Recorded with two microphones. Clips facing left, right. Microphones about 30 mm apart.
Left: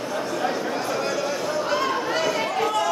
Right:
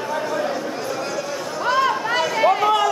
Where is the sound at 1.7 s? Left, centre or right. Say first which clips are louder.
Right 8 dB; centre.